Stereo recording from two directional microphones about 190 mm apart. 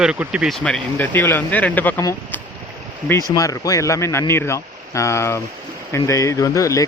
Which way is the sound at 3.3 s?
20° left (ahead or behind).